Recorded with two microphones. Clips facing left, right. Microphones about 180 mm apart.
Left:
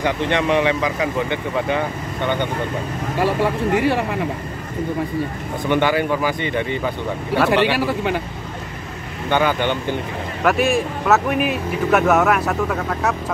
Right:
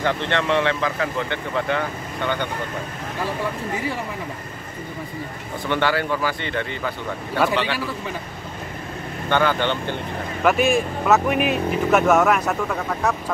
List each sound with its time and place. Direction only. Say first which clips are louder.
0.0 s speech: left 3 dB; 15° left (ahead or behind)
3.2 s speech: left 7 dB; 70° left (ahead or behind)
5.7 s speech: left 4 dB; 15° left (ahead or behind)
7.5 s speech: left 7 dB; 70° left (ahead or behind)
9.3 s speech: left 2 dB; 15° left (ahead or behind)
10.4 s speech: left 1 dB; centre (ahead or behind)